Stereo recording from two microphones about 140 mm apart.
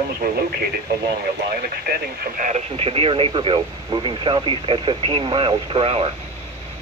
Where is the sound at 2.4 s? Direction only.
70° right (ahead or behind).